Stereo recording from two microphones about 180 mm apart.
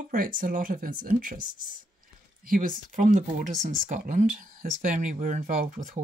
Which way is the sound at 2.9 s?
50° right (ahead or behind).